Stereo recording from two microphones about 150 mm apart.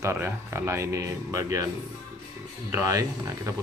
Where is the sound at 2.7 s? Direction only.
20° right (ahead or behind).